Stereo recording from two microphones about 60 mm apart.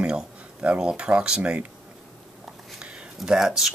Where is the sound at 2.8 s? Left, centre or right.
Centre.